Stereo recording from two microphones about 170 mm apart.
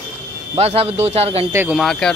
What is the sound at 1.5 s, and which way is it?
Speech, 15° right (ahead or behind).